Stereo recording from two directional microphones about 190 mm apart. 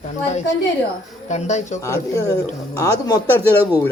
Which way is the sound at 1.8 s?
15° left (ahead or behind).